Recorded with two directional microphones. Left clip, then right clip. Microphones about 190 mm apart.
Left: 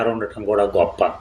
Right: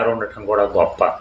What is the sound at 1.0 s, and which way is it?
Speech, 55° left (ahead or behind).